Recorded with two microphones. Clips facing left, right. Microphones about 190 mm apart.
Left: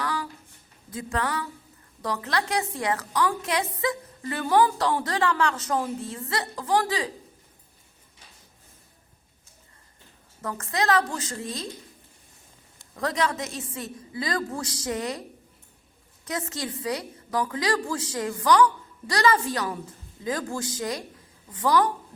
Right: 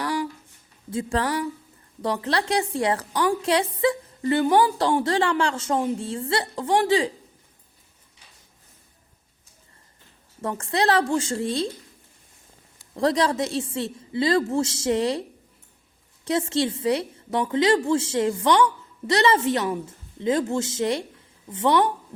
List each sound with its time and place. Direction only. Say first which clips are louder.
0.0 s a sound: right 4 dB; 30° right (ahead or behind)
0.9 s a woman's voice: right 4 dB; 30° right (ahead or behind)
10.4 s a woman's voice: right 4 dB; 30° right (ahead or behind)
13.0 s a woman's voice: right 6 dB; 35° right (ahead or behind)
16.2 s a woman's voice: right 9 dB; 30° right (ahead or behind)